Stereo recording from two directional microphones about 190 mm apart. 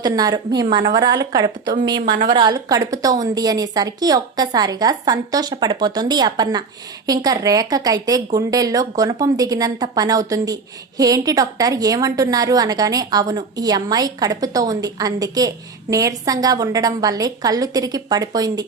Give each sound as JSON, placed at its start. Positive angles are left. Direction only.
{"t": 0.0, "sound": "a woman's voice", "side_deg": -20}